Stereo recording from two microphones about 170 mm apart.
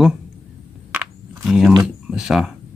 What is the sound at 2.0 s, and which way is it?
Speech, 5° right (ahead or behind).